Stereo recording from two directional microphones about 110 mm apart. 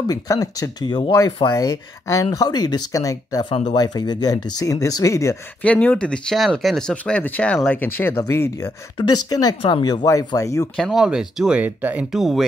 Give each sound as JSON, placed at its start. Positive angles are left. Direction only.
{"t": 0.1, "sound": "speech", "side_deg": 35}
{"t": 1.4, "sound": "speech", "side_deg": 35}
{"t": 3.4, "sound": "speech", "side_deg": 60}
{"t": 3.7, "sound": "speech", "side_deg": 40}
{"t": 5.6, "sound": "speech", "side_deg": 15}
{"t": 8.9, "sound": "speech", "side_deg": 40}
{"t": 10.0, "sound": "speech", "side_deg": 30}
{"t": 10.8, "sound": "speech", "side_deg": -5}
{"t": 12.1, "sound": "speech", "side_deg": -5}